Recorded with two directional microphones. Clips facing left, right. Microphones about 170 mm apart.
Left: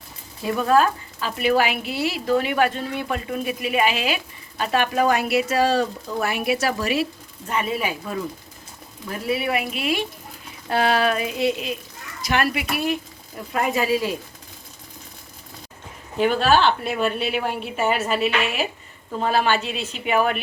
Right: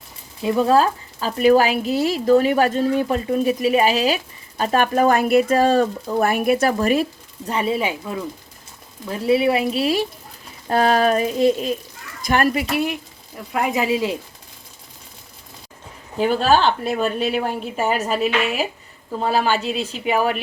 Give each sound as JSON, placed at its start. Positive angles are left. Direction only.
{"t": 0.4, "sound": "speech", "side_deg": -25}
{"t": 7.5, "sound": "speech", "side_deg": -30}
{"t": 12.7, "sound": "a woman's voice", "side_deg": -15}
{"t": 16.2, "sound": "speech", "side_deg": -40}
{"t": 19.2, "sound": "a woman's voice", "side_deg": -10}